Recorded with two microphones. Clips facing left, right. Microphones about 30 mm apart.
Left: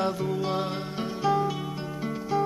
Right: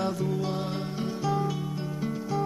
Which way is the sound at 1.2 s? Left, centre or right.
Centre.